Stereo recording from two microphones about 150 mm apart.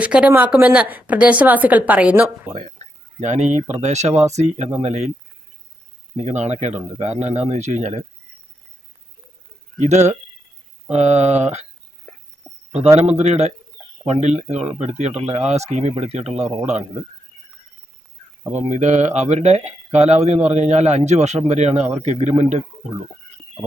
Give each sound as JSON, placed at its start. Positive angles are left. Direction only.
{"t": 0.0, "sound": "a woman's voice", "side_deg": -10}
{"t": 2.6, "sound": "speech", "side_deg": -50}
{"t": 6.2, "sound": "speech", "side_deg": -50}
{"t": 9.7, "sound": "speech", "side_deg": -50}
{"t": 13.0, "sound": "speech", "side_deg": -45}
{"t": 18.7, "sound": "speech", "side_deg": -50}